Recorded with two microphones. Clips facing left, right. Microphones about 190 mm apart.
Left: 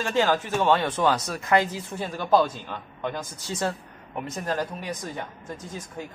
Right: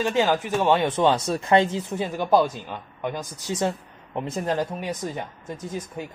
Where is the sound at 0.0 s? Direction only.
15° right (ahead or behind).